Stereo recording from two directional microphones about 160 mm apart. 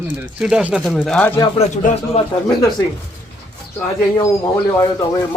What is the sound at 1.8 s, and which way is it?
Speech, 55° left (ahead or behind).